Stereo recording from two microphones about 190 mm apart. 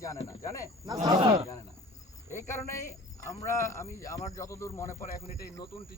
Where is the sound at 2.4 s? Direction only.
15° left (ahead or behind).